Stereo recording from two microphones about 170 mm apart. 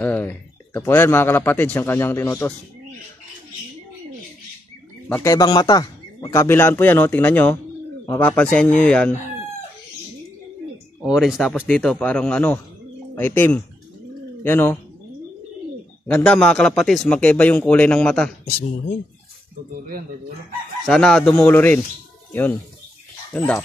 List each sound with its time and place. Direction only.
0.0 s a man's voice: 10° left (ahead or behind)
5.0 s speech: 15° left (ahead or behind)
11.0 s speech: 5° right (ahead or behind); by 14.8 s 15° left (ahead or behind)
16.1 s speech: 15° left (ahead or behind)
16.3 s speech: 5° left (ahead or behind)
20.8 s speech: 5° left (ahead or behind)